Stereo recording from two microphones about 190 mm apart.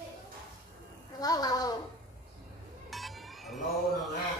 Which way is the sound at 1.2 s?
20° left (ahead or behind).